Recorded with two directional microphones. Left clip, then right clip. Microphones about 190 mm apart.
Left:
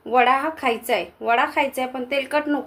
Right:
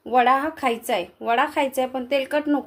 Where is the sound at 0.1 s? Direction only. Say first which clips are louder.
Left 1 dB; 55° right (ahead or behind).